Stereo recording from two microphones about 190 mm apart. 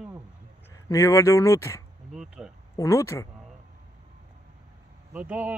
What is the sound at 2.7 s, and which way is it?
Speech, 15° left (ahead or behind).